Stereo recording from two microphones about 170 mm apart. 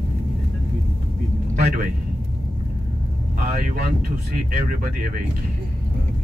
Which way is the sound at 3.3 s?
55° right (ahead or behind).